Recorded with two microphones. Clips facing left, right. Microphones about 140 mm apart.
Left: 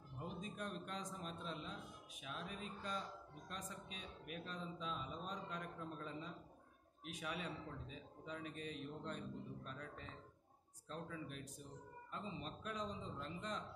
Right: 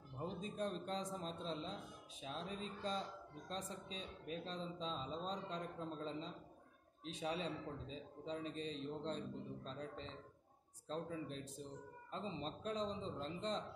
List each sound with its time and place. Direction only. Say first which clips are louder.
0.2 s a man's voice: right 5 dB; 30° right (ahead or behind)